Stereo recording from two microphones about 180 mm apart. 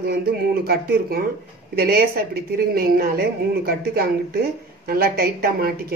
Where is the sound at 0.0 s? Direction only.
60° right (ahead or behind).